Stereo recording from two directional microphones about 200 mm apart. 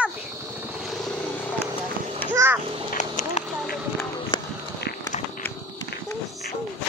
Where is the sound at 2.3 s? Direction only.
10° right (ahead or behind).